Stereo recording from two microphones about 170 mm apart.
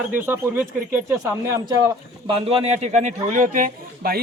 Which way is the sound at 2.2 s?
35° right (ahead or behind).